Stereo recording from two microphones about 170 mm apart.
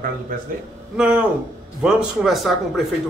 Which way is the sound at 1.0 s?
5° right (ahead or behind).